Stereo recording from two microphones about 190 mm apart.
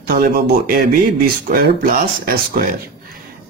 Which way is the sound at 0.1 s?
55° right (ahead or behind).